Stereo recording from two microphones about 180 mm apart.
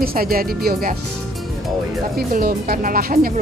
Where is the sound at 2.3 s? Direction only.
55° right (ahead or behind).